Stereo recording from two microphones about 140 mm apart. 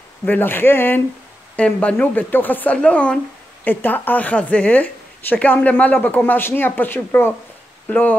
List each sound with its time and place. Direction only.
0.2 s a woman's voice: 15° left (ahead or behind)